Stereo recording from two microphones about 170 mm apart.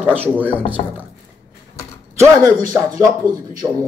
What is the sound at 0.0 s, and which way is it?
Speech, 10° right (ahead or behind).